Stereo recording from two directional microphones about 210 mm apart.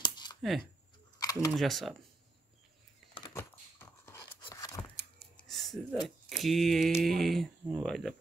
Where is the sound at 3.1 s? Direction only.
20° left (ahead or behind).